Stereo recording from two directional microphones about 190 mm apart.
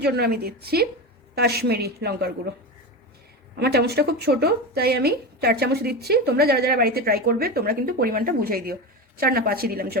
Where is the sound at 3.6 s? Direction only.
60° right (ahead or behind).